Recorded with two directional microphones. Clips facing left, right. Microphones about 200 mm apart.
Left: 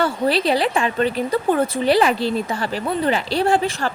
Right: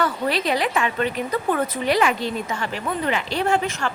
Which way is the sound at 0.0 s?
30° left (ahead or behind).